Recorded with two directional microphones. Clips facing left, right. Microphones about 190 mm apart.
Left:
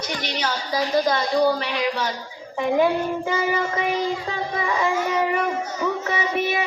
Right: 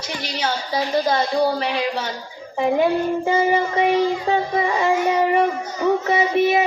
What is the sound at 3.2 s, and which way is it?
Child singing, 30° right (ahead or behind).